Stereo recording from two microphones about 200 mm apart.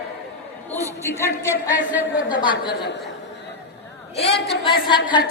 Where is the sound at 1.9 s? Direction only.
10° right (ahead or behind).